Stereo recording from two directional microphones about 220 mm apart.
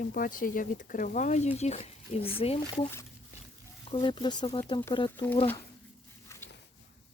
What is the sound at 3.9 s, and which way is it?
Speech, 20° left (ahead or behind).